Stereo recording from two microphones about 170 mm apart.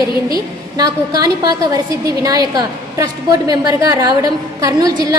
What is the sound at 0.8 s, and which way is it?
A woman's voice, 20° right (ahead or behind).